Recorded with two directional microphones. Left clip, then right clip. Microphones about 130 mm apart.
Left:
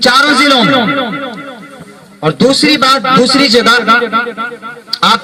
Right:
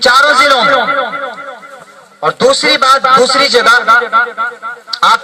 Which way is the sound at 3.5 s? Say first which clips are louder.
Right 1 dB; 50° left (ahead or behind).